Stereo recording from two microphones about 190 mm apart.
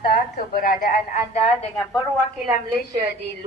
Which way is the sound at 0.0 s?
50° left (ahead or behind).